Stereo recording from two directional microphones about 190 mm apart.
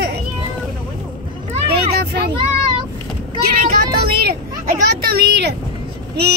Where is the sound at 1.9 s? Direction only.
55° right (ahead or behind).